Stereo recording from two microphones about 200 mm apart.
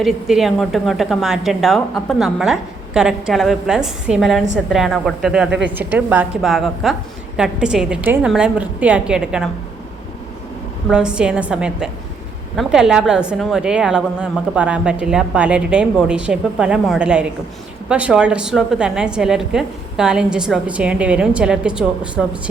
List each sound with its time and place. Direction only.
0.0 s a woman's voice: centre (ahead or behind)
5.5 s speech: 60° right (ahead or behind)
5.7 s a woman's voice: 10° right (ahead or behind)
10.8 s a woman's voice: 5° right (ahead or behind)